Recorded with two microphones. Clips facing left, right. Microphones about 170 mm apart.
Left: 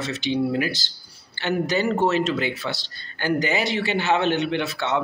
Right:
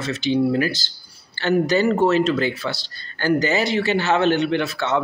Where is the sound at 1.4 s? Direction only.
15° left (ahead or behind).